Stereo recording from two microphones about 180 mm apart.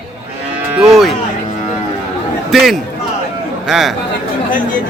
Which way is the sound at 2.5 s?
Centre (ahead or behind).